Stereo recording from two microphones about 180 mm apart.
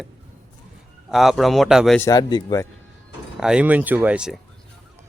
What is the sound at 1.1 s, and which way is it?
Speech, centre (ahead or behind).